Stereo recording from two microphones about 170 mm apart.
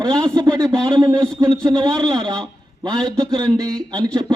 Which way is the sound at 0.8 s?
25° right (ahead or behind).